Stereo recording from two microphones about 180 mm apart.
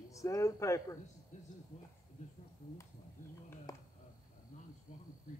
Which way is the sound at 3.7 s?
20° left (ahead or behind).